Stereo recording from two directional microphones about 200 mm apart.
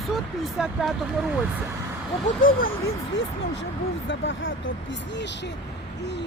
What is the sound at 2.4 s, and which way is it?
Speech, 45° left (ahead or behind).